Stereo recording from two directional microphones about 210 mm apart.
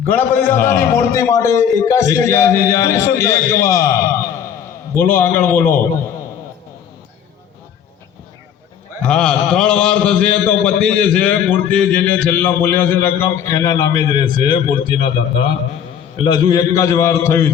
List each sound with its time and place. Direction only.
0.0 s a man's voice: 10° left (ahead or behind)
9.0 s a man's voice: 5° left (ahead or behind)